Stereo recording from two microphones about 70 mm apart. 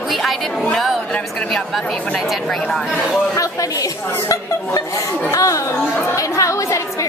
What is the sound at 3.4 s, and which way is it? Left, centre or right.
Speech, left.